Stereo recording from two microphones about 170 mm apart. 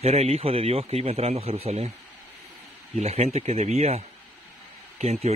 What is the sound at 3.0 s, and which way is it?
Speech, 40° right (ahead or behind).